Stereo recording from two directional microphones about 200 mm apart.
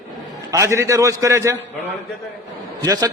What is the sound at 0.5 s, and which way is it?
A man's voice, 15° right (ahead or behind).